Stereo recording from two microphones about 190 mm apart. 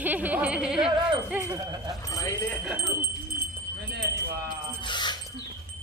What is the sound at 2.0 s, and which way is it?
Speech, 15° left (ahead or behind).